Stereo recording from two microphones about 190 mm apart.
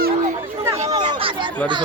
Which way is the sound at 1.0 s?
30° right (ahead or behind).